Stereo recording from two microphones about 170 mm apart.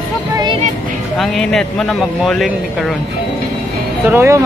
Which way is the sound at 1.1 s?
Centre (ahead or behind).